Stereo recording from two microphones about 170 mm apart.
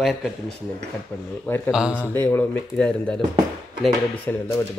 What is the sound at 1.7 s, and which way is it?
Speech, 5° right (ahead or behind).